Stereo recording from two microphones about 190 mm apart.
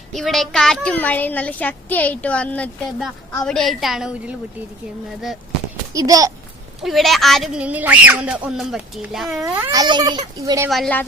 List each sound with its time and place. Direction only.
0.1 s a woman's voice: centre (ahead or behind)
5.9 s a child's voice: 20° right (ahead or behind)
6.8 s a woman's voice: centre (ahead or behind)
9.4 s a child's voice: 15° right (ahead or behind)
10.7 s a woman's voice: 5° left (ahead or behind)